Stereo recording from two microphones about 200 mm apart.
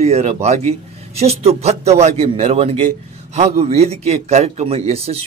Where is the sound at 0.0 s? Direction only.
30° right (ahead or behind).